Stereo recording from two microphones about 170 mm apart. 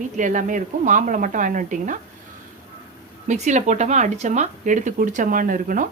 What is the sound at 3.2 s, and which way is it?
Speech, 45° right (ahead or behind).